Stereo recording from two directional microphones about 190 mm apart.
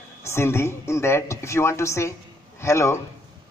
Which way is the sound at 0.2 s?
15° left (ahead or behind).